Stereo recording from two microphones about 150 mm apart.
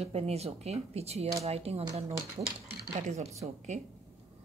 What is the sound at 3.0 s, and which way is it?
Speech, 50° right (ahead or behind).